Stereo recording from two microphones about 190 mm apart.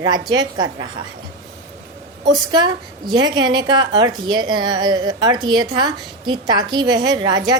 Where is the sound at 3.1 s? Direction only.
20° right (ahead or behind).